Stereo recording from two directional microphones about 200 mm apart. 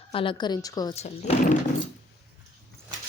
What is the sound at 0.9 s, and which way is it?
Speech, 35° left (ahead or behind).